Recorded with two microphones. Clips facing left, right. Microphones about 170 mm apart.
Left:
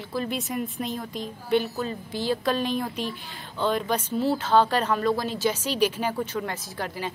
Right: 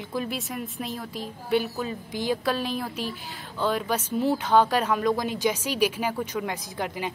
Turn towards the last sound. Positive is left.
turn(degrees=-15)  # may be behind; listen again after turning